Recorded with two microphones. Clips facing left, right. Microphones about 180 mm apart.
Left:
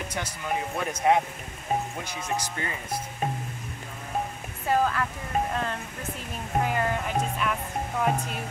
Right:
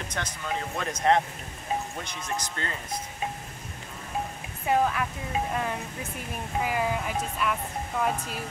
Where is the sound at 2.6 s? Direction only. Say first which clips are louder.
Left 1 dB; 15° left (ahead or behind).